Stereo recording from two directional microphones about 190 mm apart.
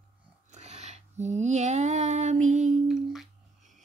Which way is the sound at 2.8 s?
Centre (ahead or behind).